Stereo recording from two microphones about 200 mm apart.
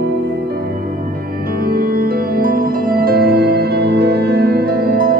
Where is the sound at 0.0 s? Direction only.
60° right (ahead or behind).